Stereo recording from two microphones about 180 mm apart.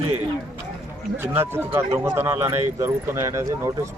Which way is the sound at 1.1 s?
10° right (ahead or behind).